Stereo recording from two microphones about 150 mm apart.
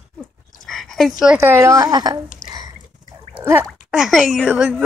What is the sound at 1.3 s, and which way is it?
Speech, 15° right (ahead or behind).